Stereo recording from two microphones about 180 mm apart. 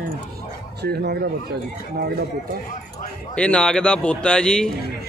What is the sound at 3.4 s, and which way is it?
Speech, 5° left (ahead or behind).